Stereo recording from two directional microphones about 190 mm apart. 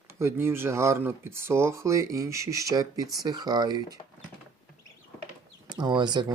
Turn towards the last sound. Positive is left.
turn(degrees=-20)  # may be behind; listen again after turning